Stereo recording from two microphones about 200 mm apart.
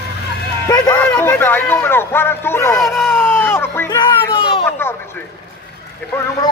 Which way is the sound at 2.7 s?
Centre (ahead or behind).